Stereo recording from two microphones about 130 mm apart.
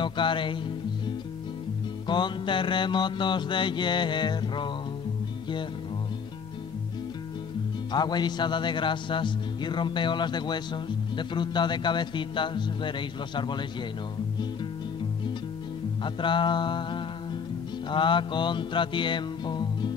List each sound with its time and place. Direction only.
0.0 s music: 40° left (ahead or behind)
2.0 s music: 35° left (ahead or behind)
7.9 s music: 35° left (ahead or behind)
16.0 s music: 40° left (ahead or behind)